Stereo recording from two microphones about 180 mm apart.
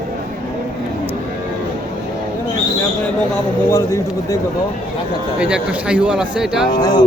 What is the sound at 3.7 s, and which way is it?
Speech, 15° left (ahead or behind).